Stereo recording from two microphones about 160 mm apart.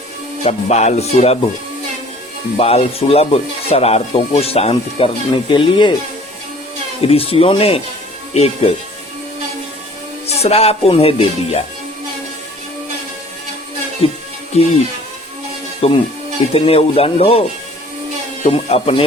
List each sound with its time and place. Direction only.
0.4 s music: 45° left (ahead or behind)
2.6 s speech: 40° left (ahead or behind)
7.0 s speech: 35° left (ahead or behind)
10.2 s speech: 40° left (ahead or behind)
14.0 s speech: 35° left (ahead or behind)
14.5 s music: 40° left (ahead or behind)
15.8 s speech: 40° left (ahead or behind)
18.4 s speech: 40° left (ahead or behind)